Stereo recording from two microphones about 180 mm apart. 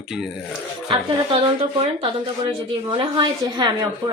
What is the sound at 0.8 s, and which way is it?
Speech, 25° right (ahead or behind).